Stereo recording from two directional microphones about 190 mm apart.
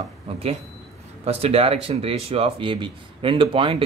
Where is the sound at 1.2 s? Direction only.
30° right (ahead or behind).